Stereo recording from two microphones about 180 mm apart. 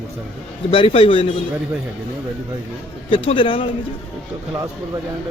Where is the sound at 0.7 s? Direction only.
30° left (ahead or behind).